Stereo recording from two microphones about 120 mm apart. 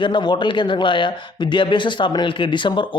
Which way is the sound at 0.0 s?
40° left (ahead or behind).